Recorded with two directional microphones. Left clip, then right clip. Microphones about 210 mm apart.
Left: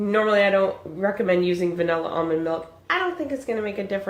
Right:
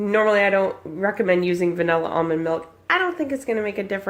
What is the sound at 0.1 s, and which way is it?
Speech, 50° right (ahead or behind).